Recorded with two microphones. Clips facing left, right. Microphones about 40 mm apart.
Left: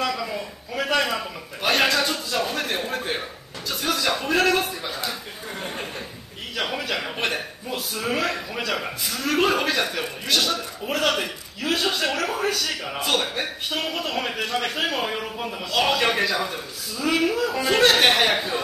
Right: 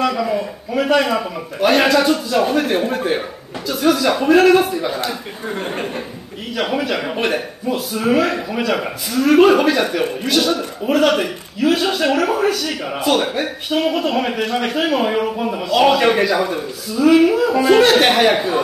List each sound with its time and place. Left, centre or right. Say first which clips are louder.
0.0 s a sound: right 8 dB; centre
0.7 s a man's voice: right 7 dB; centre
5.5 s speech: right 8 dB; right
6.5 s a man's voice: right 7 dB; centre
15.0 s a man's voice: right 10 dB; centre